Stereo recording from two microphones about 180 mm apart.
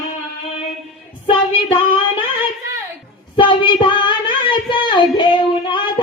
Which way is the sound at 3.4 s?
25° left (ahead or behind).